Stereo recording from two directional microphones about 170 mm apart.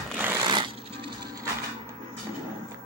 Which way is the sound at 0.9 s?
70° right (ahead or behind).